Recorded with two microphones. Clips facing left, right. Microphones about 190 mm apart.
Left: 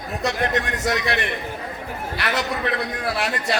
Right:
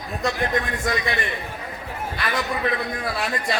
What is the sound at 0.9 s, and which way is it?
A man's voice, 75° left (ahead or behind).